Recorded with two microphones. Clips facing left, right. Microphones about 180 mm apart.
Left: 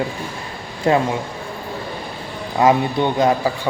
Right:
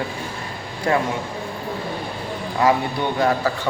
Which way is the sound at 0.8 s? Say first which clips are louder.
Left 4 dB; 20° left (ahead or behind).